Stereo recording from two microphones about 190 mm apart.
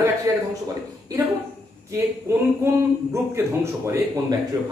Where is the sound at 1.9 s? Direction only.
15° right (ahead or behind).